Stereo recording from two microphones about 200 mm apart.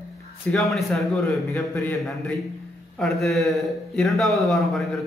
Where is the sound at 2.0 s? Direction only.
Centre (ahead or behind).